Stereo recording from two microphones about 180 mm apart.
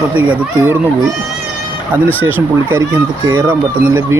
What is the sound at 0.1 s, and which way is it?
Speech, 10° right (ahead or behind).